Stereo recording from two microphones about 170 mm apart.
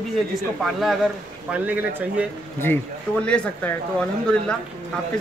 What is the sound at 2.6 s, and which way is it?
A man's voice, 10° left (ahead or behind).